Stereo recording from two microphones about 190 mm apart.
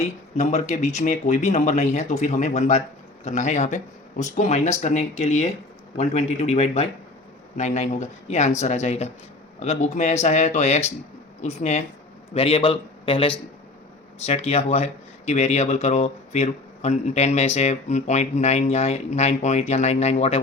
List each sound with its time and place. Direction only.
0.0 s a man's voice: 35° left (ahead or behind)